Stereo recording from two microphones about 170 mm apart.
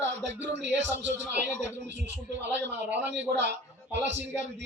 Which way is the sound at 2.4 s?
90° right.